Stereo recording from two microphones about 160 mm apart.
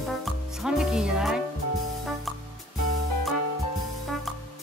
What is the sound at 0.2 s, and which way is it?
Music, centre (ahead or behind).